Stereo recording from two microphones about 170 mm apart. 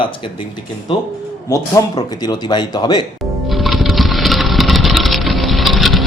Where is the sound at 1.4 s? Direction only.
20° left (ahead or behind).